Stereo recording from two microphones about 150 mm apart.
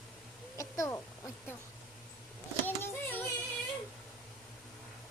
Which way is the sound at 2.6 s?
10° left (ahead or behind).